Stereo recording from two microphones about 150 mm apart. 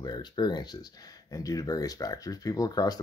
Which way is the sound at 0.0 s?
30° left (ahead or behind).